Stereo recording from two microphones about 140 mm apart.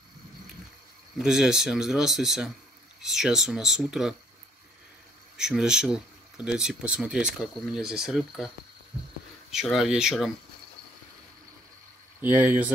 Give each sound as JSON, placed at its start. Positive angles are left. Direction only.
{"t": 1.1, "sound": "speech", "side_deg": -5}
{"t": 5.4, "sound": "speech", "side_deg": -5}
{"t": 9.5, "sound": "speech", "side_deg": 0}
{"t": 12.2, "sound": "speech", "side_deg": -15}